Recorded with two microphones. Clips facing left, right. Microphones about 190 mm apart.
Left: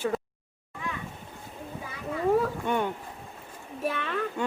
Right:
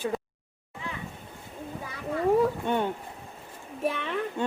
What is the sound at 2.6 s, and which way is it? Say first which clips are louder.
Speech: right 1 dB; 20° right (ahead or behind).